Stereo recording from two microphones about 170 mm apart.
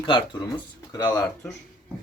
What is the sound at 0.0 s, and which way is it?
Speech, 30° left (ahead or behind).